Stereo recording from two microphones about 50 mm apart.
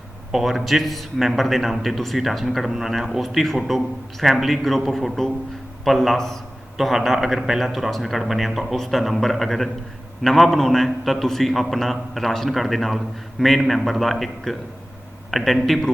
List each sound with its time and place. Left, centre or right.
0.3 s a man's voice: centre